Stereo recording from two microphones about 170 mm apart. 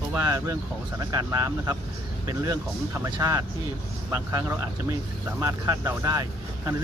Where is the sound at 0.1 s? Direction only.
15° right (ahead or behind).